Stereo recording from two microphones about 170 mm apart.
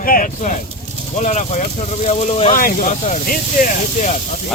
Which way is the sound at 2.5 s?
50° left (ahead or behind).